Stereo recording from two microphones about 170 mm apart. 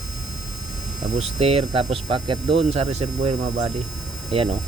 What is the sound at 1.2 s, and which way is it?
Speech, 35° right (ahead or behind).